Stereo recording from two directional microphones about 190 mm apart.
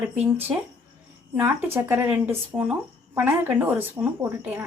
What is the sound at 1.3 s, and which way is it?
Speech, 10° right (ahead or behind).